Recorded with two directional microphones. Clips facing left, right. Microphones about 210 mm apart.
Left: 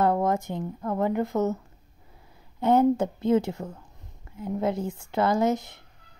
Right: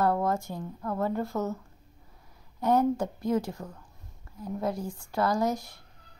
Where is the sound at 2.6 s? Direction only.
25° left (ahead or behind).